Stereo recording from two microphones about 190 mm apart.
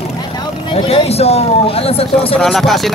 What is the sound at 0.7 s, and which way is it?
Speech, 30° left (ahead or behind).